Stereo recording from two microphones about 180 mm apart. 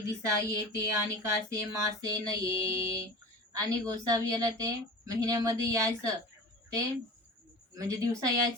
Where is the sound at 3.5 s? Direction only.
20° right (ahead or behind).